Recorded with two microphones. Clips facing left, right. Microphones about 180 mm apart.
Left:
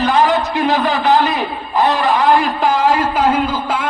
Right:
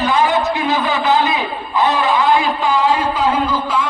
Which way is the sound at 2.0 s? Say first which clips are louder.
Left 1 dB; 45° left (ahead or behind).